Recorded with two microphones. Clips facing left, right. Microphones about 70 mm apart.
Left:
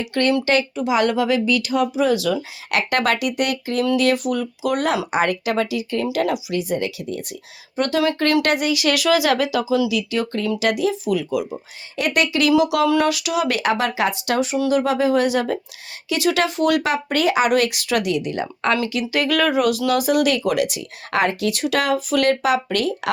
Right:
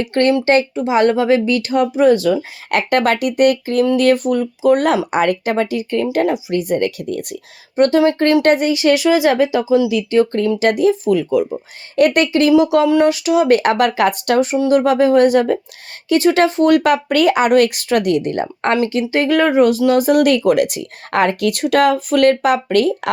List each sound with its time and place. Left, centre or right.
0.0 s speech: right
6.5 s speech: right
7.8 s speech: right
9.9 s speech: right
20.1 s speech: right